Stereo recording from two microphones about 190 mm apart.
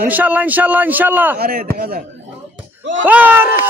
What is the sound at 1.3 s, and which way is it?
Speech, 50° right (ahead or behind).